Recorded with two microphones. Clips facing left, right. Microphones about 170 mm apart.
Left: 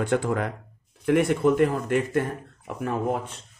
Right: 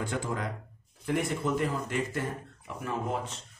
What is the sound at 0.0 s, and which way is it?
Speech, 65° left (ahead or behind).